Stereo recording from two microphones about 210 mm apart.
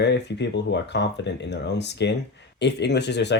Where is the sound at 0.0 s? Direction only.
55° left (ahead or behind).